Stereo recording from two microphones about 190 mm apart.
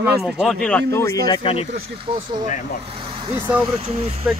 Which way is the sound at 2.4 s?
45° left (ahead or behind).